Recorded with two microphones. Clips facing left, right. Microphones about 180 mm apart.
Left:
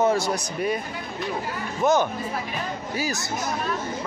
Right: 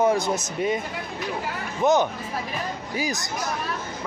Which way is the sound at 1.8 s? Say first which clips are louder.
Right 1 dB; 20° right (ahead or behind).